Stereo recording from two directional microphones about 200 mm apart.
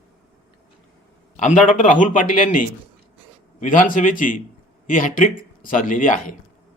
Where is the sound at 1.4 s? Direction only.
40° left (ahead or behind).